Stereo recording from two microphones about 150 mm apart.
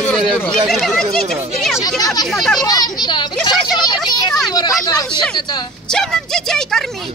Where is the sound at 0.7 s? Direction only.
Centre (ahead or behind).